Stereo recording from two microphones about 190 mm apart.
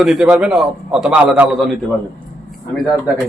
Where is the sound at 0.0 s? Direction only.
5° right (ahead or behind).